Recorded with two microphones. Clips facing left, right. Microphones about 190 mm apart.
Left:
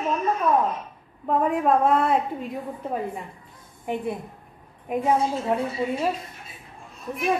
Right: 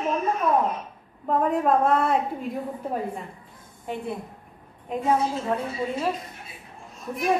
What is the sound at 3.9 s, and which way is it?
A woman's voice, 15° left (ahead or behind).